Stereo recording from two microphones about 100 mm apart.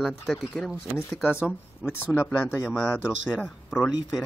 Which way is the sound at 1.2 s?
10° right (ahead or behind).